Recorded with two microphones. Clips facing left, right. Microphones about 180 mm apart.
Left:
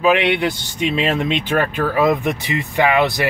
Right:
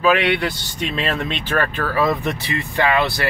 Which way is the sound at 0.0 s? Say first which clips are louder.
Left 2 dB; 20° left (ahead or behind).